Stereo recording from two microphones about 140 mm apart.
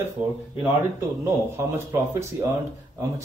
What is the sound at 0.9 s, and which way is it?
Speech, 20° right (ahead or behind).